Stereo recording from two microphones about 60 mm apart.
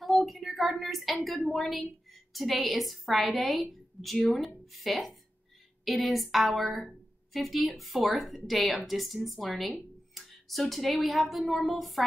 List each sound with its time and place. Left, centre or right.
0.0 s a woman's voice: centre